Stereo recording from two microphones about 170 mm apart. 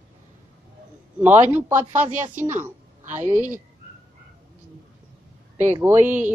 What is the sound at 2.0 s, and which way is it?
Speech, 45° right (ahead or behind).